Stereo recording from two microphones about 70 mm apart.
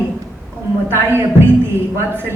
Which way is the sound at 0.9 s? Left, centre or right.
Right.